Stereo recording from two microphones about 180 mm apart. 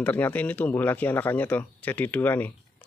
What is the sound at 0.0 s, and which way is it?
Speech, 10° left (ahead or behind).